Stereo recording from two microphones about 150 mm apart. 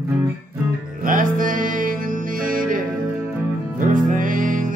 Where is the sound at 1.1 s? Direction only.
65° right (ahead or behind).